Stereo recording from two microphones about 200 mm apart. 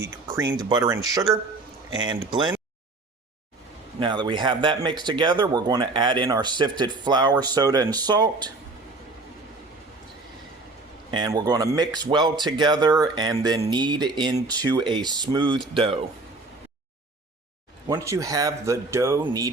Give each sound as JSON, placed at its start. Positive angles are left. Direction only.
{"t": 0.3, "sound": "speech", "side_deg": -20}
{"t": 4.0, "sound": "speech", "side_deg": -25}
{"t": 11.1, "sound": "speech", "side_deg": -20}
{"t": 17.8, "sound": "speech", "side_deg": -15}